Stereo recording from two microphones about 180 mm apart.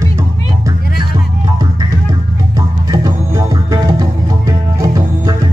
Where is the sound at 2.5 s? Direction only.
20° right (ahead or behind).